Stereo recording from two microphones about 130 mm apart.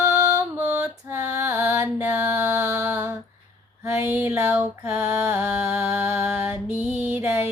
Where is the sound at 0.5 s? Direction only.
10° right (ahead or behind).